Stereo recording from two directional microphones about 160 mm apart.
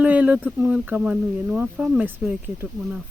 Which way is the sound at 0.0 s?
10° right (ahead or behind).